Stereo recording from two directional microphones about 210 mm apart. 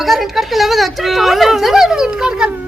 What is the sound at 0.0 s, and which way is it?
Speech, centre (ahead or behind).